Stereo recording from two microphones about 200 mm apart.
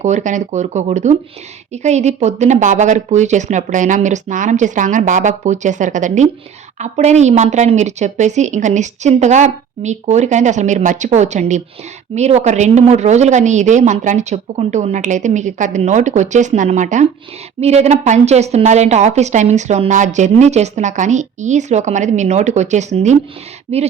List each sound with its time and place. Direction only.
0.0 s a woman's voice: 35° right (ahead or behind)